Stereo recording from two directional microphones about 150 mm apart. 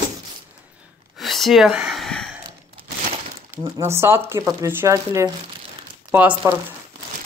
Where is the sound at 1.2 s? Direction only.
Centre (ahead or behind).